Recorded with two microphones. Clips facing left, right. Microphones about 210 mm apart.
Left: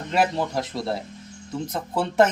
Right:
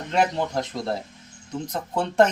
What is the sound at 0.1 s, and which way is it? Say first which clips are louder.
Speech: even; 5° left (ahead or behind).